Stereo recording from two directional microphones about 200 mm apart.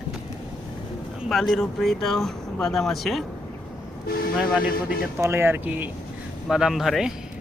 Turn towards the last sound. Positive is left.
turn(degrees=0)  # may be behind; listen again after turning